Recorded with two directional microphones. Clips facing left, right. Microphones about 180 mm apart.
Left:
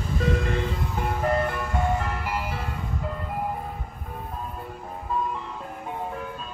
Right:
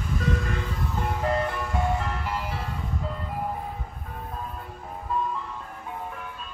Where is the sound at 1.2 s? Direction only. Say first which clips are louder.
Left 2 dB; 5° left (ahead or behind).